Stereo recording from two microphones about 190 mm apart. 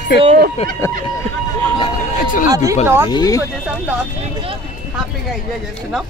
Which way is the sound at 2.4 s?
20° right (ahead or behind).